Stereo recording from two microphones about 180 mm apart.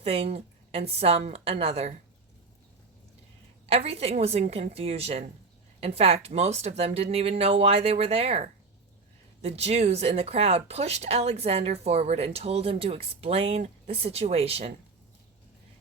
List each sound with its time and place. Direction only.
0.0 s speech: 35° right (ahead or behind)
3.7 s speech: 35° right (ahead or behind)